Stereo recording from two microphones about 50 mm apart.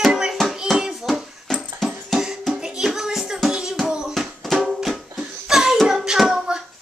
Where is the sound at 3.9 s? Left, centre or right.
Centre.